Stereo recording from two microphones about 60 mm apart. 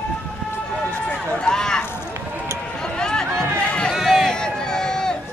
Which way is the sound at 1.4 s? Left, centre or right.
Centre.